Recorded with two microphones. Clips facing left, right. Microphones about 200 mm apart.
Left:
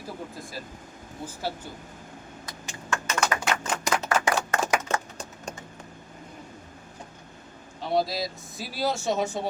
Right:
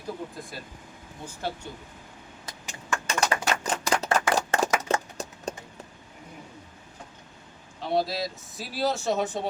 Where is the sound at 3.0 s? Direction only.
35° right (ahead or behind).